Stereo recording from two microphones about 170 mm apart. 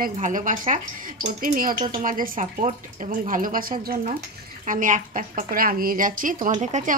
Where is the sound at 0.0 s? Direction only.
50° right (ahead or behind).